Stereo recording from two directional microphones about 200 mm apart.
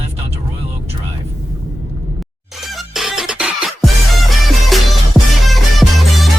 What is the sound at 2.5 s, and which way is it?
Music, centre (ahead or behind).